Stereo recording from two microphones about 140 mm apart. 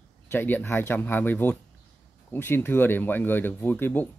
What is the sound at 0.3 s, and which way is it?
Speech, 15° left (ahead or behind).